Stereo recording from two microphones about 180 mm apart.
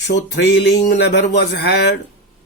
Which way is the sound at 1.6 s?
70° left (ahead or behind).